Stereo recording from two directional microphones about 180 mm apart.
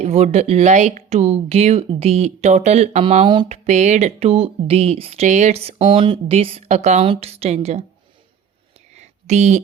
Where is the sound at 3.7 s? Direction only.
40° right (ahead or behind).